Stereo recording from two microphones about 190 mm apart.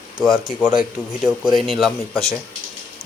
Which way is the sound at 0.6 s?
5° right (ahead or behind).